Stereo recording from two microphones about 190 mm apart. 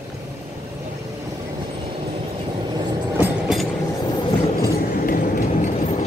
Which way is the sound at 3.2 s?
Centre (ahead or behind).